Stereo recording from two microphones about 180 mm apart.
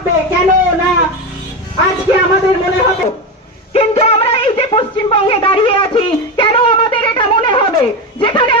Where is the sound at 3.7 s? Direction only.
35° left (ahead or behind).